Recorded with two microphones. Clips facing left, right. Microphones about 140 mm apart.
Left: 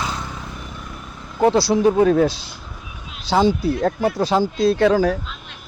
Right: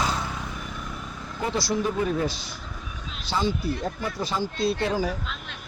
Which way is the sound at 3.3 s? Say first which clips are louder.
Left 9 dB; 75° left (ahead or behind).